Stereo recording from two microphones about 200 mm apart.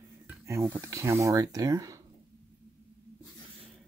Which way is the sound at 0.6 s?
10° right (ahead or behind).